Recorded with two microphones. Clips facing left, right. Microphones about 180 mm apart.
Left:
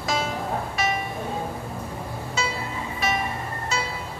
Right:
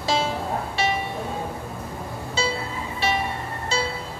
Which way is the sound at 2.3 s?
30° right (ahead or behind).